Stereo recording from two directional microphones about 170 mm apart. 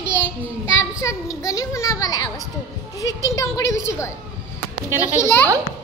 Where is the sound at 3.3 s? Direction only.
20° left (ahead or behind).